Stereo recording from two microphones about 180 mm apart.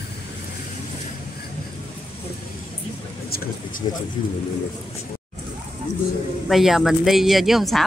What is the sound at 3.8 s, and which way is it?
Speech, 35° left (ahead or behind).